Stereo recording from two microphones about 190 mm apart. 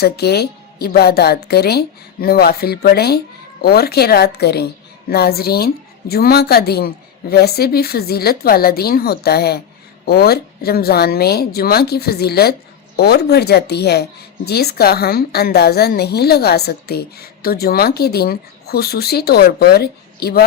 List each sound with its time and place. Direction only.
0.0 s speech: 60° left (ahead or behind)